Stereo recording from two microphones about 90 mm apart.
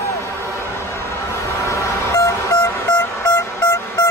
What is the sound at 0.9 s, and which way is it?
Vehicle, 30° left (ahead or behind).